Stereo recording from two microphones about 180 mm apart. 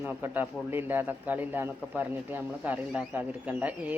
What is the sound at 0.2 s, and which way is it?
Speech, 10° right (ahead or behind).